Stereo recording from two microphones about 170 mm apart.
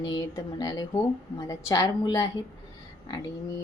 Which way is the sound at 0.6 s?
25° left (ahead or behind).